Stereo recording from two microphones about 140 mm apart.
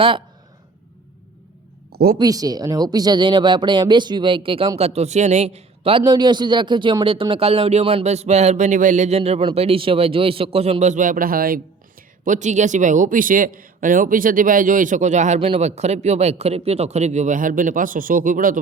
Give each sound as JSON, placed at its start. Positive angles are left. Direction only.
{"t": 2.1, "sound": "speech", "side_deg": -25}
{"t": 4.8, "sound": "speech", "side_deg": -50}
{"t": 6.1, "sound": "speech", "side_deg": -30}
{"t": 12.2, "sound": "a man's voice", "side_deg": -60}